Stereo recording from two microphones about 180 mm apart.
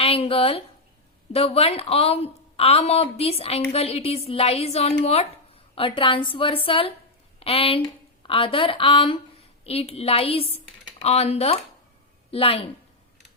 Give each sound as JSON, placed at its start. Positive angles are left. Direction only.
{"t": 0.0, "sound": "a woman's voice", "side_deg": 30}